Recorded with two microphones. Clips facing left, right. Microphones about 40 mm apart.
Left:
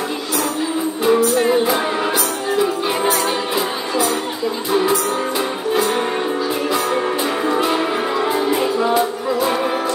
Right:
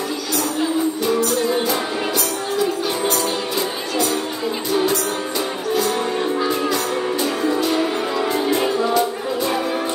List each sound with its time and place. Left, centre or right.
7.4 s music: left